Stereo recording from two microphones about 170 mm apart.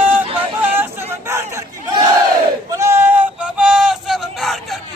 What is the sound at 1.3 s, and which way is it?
Chatter, 15° right (ahead or behind).